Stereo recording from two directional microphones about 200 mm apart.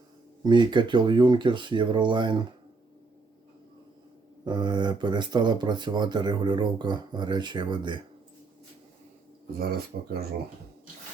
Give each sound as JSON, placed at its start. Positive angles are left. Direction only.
{"t": 0.4, "sound": "speech", "side_deg": -20}
{"t": 4.4, "sound": "speech", "side_deg": -20}
{"t": 9.6, "sound": "speech", "side_deg": -50}